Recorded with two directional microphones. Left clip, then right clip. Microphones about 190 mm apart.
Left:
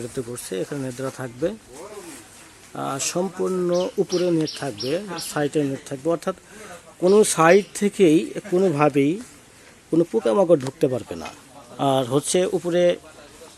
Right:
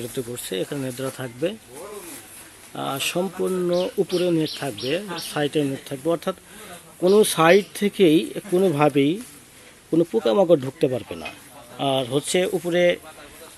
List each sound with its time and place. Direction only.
0.5 s speech: centre (ahead or behind)
2.7 s speech: 10° left (ahead or behind)